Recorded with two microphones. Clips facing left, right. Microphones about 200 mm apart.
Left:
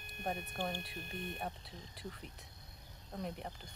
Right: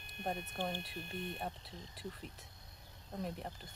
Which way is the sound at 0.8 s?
Centre (ahead or behind).